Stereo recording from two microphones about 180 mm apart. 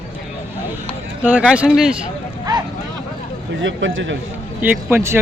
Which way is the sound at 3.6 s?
90° right.